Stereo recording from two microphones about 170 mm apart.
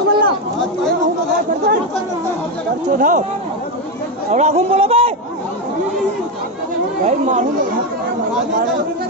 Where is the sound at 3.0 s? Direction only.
50° right (ahead or behind).